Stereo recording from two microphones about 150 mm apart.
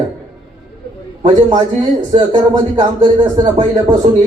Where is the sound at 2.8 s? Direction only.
30° right (ahead or behind).